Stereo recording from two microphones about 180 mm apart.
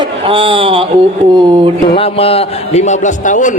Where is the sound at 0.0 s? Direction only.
30° right (ahead or behind).